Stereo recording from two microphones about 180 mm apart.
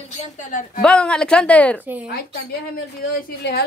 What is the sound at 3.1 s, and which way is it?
Speech, 65° left (ahead or behind).